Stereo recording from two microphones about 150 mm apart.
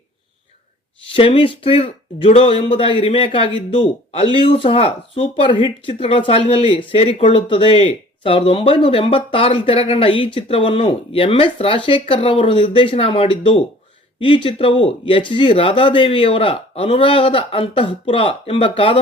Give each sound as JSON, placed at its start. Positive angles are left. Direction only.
{"t": 1.4, "sound": "a man's voice", "side_deg": 35}